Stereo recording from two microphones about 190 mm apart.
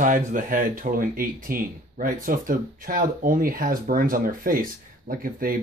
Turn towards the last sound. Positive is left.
turn(degrees=-50)  # may be behind; listen again after turning